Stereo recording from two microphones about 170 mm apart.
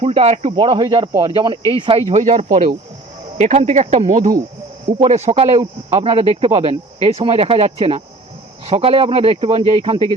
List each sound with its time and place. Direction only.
0.0 s speech: 35° right (ahead or behind)
0.5 s speech: 25° right (ahead or behind)